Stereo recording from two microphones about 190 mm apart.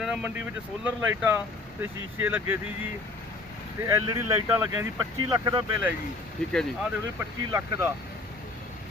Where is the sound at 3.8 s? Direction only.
15° right (ahead or behind).